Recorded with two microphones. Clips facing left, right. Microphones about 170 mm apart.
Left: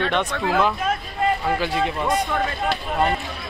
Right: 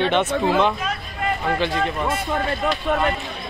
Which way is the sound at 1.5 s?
15° left (ahead or behind).